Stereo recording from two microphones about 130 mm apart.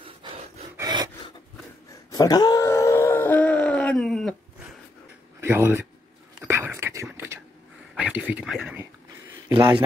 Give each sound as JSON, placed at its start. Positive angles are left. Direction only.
{"t": 0.7, "sound": "filing", "side_deg": -30}
{"t": 2.0, "sound": "wail", "side_deg": 30}
{"t": 5.4, "sound": "speech", "side_deg": -20}
{"t": 6.4, "sound": "whispering", "side_deg": -15}
{"t": 7.9, "sound": "a sound", "side_deg": -10}